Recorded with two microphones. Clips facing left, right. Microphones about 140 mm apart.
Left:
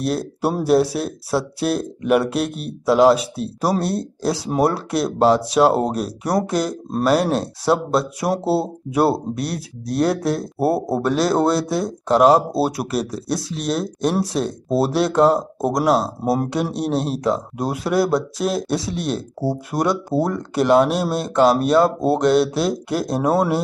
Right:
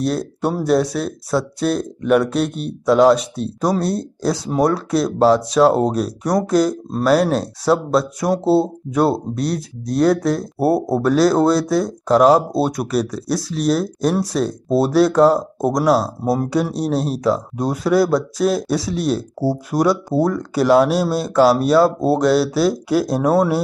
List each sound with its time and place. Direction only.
0.0 s speech: 5° left (ahead or behind)
16.0 s speech: 25° left (ahead or behind)
16.7 s speech: centre (ahead or behind)